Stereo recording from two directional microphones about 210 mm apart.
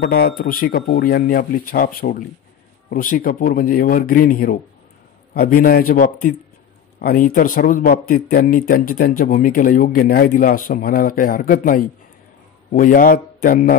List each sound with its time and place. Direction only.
0.0 s speech: 50° left (ahead or behind)